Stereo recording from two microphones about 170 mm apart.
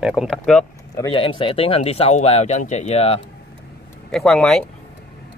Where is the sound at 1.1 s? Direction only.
30° left (ahead or behind).